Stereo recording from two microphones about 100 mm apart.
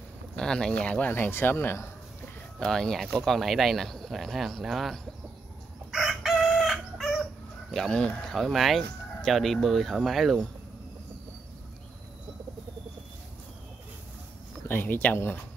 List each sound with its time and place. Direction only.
0.4 s speech: 5° left (ahead or behind); by 1.9 s 20° left (ahead or behind)
2.6 s speech: 5° left (ahead or behind)
5.9 s chicken: 5° right (ahead or behind)
7.7 s speech: 5° left (ahead or behind)
14.7 s speech: 20° left (ahead or behind)